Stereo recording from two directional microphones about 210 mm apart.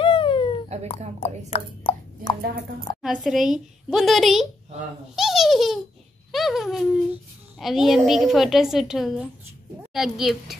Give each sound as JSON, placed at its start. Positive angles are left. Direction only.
{"t": 0.0, "sound": "a sound", "side_deg": 25}
{"t": 1.2, "sound": "speech", "side_deg": 25}
{"t": 3.0, "sound": "a woman's voice", "side_deg": 0}